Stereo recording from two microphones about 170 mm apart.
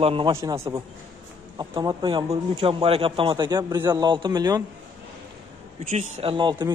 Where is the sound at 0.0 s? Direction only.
35° right (ahead or behind).